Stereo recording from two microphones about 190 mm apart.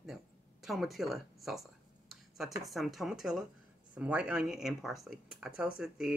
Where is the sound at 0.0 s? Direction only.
Centre (ahead or behind).